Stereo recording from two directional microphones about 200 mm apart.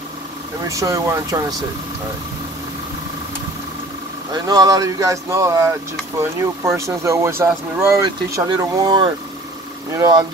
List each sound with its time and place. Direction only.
0.7 s speech: 15° right (ahead or behind)
4.3 s speech: 20° right (ahead or behind)